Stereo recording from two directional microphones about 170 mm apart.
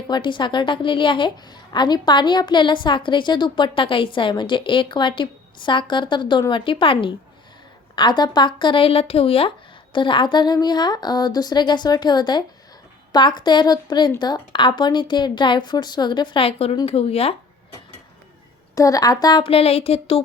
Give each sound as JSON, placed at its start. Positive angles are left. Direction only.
{"t": 0.1, "sound": "a woman's voice", "side_deg": 30}
{"t": 18.7, "sound": "a woman's voice", "side_deg": 20}